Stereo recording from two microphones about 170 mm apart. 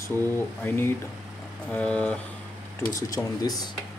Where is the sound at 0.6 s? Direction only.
15° left (ahead or behind).